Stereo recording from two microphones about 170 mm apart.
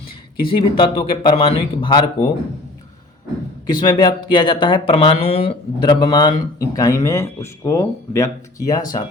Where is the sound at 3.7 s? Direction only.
25° left (ahead or behind).